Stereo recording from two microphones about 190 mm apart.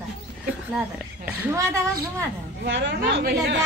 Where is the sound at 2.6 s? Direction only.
70° right (ahead or behind).